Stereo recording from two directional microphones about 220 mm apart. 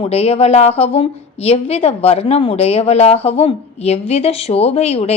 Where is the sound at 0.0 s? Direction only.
25° left (ahead or behind).